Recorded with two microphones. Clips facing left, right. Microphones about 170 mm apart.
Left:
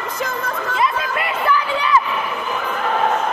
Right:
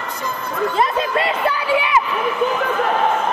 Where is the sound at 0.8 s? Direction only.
30° right (ahead or behind).